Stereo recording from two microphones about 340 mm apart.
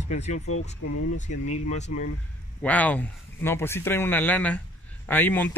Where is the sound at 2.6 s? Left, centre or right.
Centre.